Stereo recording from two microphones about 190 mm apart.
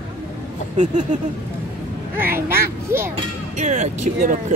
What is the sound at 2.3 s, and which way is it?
Speech, 10° right (ahead or behind).